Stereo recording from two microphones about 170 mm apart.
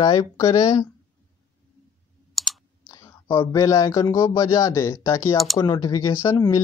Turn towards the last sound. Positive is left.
turn(degrees=20)  # may be behind; listen again after turning